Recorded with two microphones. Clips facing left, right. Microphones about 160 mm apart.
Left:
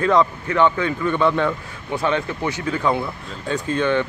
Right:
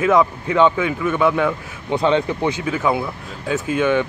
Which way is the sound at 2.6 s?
5° right (ahead or behind).